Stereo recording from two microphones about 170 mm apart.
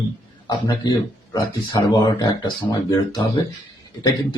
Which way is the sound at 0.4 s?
25° left (ahead or behind).